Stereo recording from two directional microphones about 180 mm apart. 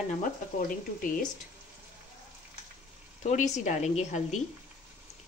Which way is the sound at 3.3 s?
40° left (ahead or behind).